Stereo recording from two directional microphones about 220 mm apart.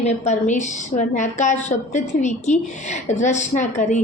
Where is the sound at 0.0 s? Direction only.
30° left (ahead or behind).